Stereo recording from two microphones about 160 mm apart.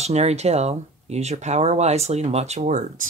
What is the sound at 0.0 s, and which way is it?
Speech, 40° right (ahead or behind).